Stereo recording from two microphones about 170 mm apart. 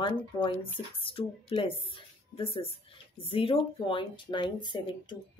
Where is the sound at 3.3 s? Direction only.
30° left (ahead or behind).